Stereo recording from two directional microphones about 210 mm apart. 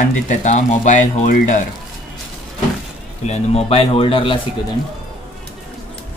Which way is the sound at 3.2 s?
30° left (ahead or behind).